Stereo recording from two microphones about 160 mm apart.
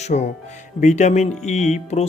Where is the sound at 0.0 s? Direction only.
45° left (ahead or behind).